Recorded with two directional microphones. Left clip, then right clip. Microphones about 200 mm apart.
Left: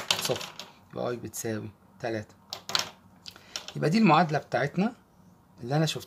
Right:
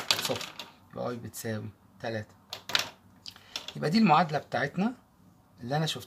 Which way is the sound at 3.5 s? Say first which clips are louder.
Left 2 dB; 30° left (ahead or behind).